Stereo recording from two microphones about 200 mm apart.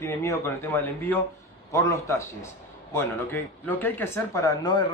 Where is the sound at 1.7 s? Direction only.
15° left (ahead or behind).